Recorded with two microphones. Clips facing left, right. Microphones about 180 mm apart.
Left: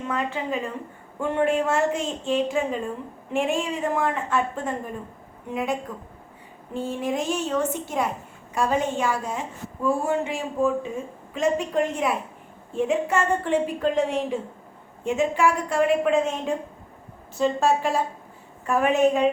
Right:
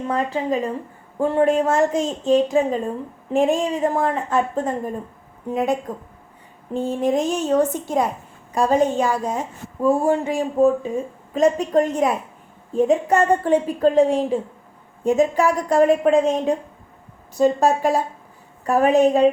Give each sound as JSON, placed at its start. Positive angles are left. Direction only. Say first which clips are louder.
{"t": 0.1, "sound": "a woman's voice", "louder": "right 5 dB", "side_deg": -35}
{"t": 6.7, "sound": "a woman's voice", "louder": "right 6 dB", "side_deg": -40}